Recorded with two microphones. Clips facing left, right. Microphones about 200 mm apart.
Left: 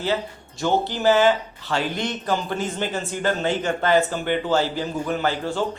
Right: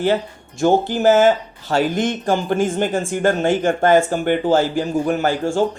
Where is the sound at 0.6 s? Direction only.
45° right (ahead or behind).